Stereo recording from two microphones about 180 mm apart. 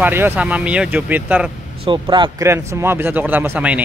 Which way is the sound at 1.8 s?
25° right (ahead or behind).